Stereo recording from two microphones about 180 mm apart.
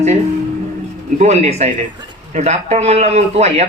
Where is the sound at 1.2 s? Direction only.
35° right (ahead or behind).